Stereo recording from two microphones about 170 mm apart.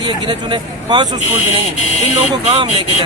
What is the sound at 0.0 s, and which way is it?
Speech, 25° right (ahead or behind).